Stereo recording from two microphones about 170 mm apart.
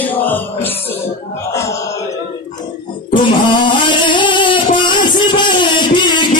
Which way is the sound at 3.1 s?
30° left (ahead or behind).